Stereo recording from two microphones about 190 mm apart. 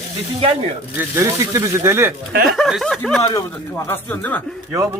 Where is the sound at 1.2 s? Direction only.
15° right (ahead or behind).